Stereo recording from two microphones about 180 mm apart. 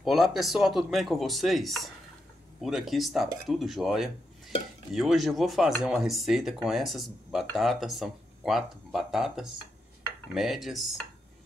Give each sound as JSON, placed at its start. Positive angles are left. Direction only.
{"t": 0.0, "sound": "speech", "side_deg": 0}